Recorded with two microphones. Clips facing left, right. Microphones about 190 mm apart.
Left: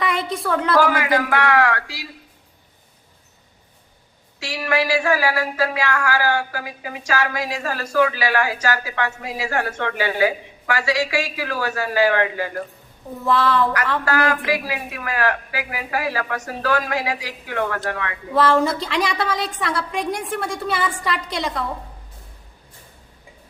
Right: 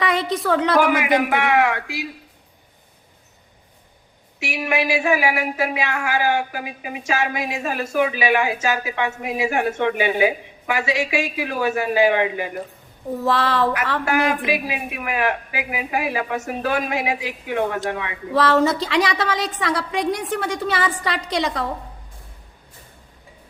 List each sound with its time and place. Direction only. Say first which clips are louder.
0.0 s a woman's voice: right 2 dB; centre (ahead or behind)
0.8 s speech: right 1 dB; 20° right (ahead or behind)
4.4 s speech: even; 20° right (ahead or behind)
14.0 s speech: right 3 dB; 20° right (ahead or behind)
18.5 s a woman's voice: right 2 dB; centre (ahead or behind)